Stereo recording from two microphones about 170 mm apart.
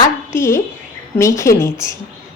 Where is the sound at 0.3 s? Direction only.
15° left (ahead or behind).